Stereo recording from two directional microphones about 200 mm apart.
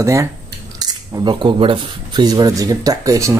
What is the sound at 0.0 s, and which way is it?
Speech, 15° right (ahead or behind).